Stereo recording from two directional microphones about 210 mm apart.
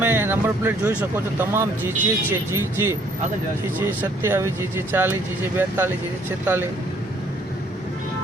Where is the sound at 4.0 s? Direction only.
10° right (ahead or behind).